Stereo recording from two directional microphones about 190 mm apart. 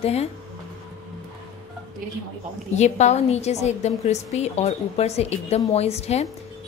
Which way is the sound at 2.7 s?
35° left (ahead or behind).